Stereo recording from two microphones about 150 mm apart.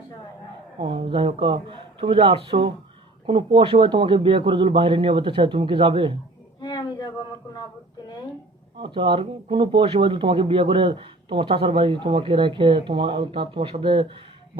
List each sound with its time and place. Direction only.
0.8 s speech: 35° right (ahead or behind)
6.6 s a sound: 30° left (ahead or behind)
8.8 s speech: 35° right (ahead or behind)